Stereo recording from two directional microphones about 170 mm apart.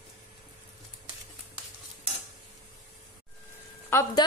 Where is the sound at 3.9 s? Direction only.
15° left (ahead or behind).